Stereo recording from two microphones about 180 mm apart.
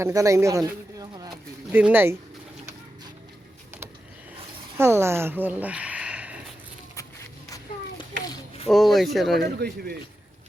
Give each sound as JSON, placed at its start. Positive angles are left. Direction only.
{"t": 0.0, "sound": "speech", "side_deg": -20}
{"t": 4.8, "sound": "speech", "side_deg": -15}
{"t": 8.3, "sound": "a sound", "side_deg": 30}
{"t": 8.7, "sound": "speech", "side_deg": 0}
{"t": 9.4, "sound": "speech", "side_deg": -60}